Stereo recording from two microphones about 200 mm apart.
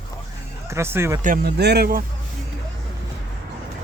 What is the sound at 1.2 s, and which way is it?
Speech, 45° right (ahead or behind).